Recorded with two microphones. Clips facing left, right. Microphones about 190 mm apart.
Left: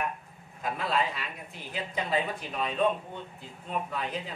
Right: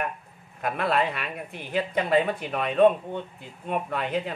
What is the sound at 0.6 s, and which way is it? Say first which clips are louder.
Speech: right 5 dB; 60° right (ahead or behind).